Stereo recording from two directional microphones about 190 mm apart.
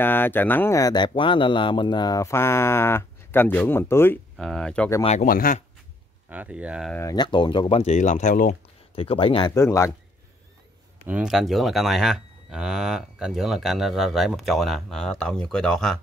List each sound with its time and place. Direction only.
0.0 s speech: 10° left (ahead or behind)
4.4 s speech: centre (ahead or behind)
5.0 s speech: 40° left (ahead or behind)
6.2 s speech: 10° right (ahead or behind)
6.9 s speech: 15° left (ahead or behind)
9.6 s speech: 15° left (ahead or behind)
11.1 s speech: 5° right (ahead or behind)